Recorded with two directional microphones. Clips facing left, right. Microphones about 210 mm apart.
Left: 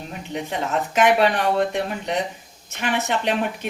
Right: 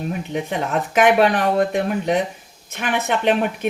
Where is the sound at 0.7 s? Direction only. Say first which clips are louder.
Right 2 dB; 55° right (ahead or behind).